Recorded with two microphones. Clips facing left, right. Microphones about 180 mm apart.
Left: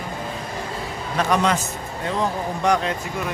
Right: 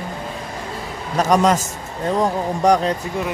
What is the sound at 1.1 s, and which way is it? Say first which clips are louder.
A man's voice: right 5 dB; 40° right (ahead or behind).